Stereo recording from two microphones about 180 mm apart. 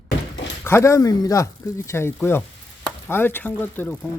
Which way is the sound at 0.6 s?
15° left (ahead or behind).